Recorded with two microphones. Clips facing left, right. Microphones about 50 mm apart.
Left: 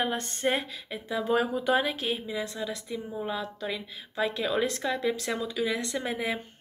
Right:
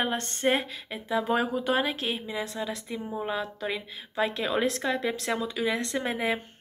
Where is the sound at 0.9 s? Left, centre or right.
Centre.